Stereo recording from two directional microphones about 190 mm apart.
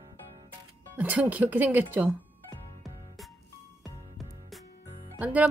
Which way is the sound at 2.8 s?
Centre (ahead or behind).